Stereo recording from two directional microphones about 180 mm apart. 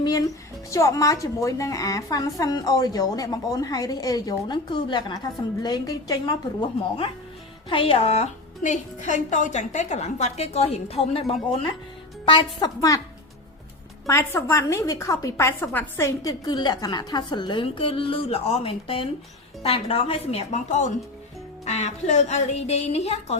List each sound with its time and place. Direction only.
0.7 s a woman's voice: 15° left (ahead or behind)
14.1 s a woman's voice: 15° left (ahead or behind); by 23.4 s 35° left (ahead or behind)